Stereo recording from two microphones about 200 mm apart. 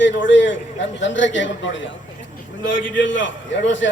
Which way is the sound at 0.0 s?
65° left (ahead or behind).